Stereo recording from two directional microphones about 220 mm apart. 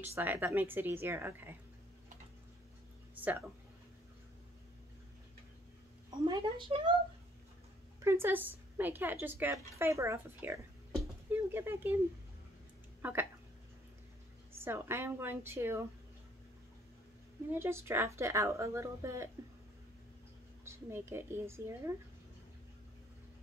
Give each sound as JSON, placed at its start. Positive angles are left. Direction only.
{"t": 0.0, "sound": "a woman's voice", "side_deg": -10}
{"t": 3.2, "sound": "a woman's voice", "side_deg": -10}
{"t": 6.0, "sound": "a woman's voice", "side_deg": -20}
{"t": 8.0, "sound": "a woman's voice", "side_deg": -10}
{"t": 13.0, "sound": "speech", "side_deg": -10}
{"t": 14.6, "sound": "a woman's voice", "side_deg": -10}
{"t": 17.5, "sound": "a woman's voice", "side_deg": -10}
{"t": 20.6, "sound": "a woman's voice", "side_deg": -10}